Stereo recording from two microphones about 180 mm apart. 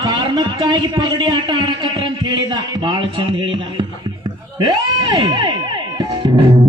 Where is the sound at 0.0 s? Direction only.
20° right (ahead or behind).